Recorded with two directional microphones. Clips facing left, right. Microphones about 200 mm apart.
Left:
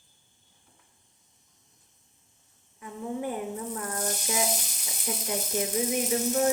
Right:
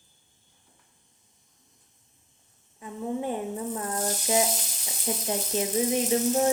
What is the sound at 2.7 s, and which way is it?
Speech, 25° right (ahead or behind).